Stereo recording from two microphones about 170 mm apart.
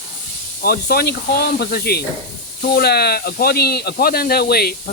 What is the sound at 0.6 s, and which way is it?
Speech, 60° left (ahead or behind).